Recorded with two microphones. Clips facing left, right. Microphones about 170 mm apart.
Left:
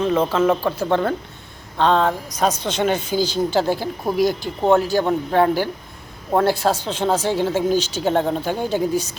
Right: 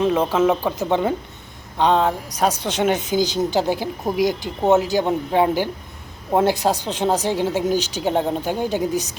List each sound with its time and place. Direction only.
0.2 s speech: 15° right (ahead or behind)